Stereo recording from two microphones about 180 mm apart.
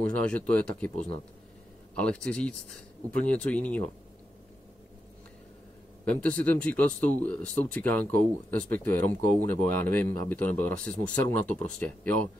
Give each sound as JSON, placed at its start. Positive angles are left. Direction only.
{"t": 0.2, "sound": "speech", "side_deg": 5}
{"t": 0.9, "sound": "speech", "side_deg": 35}
{"t": 2.0, "sound": "speech", "side_deg": 5}
{"t": 6.0, "sound": "speech", "side_deg": 5}